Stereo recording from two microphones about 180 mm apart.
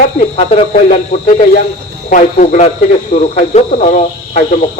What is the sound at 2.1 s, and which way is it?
Speech, 45° left (ahead or behind).